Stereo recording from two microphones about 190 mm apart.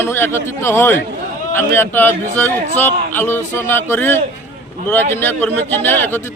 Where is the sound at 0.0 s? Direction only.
10° left (ahead or behind).